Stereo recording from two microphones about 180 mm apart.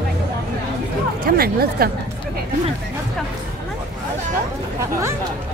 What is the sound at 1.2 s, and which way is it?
Speech, 55° right (ahead or behind).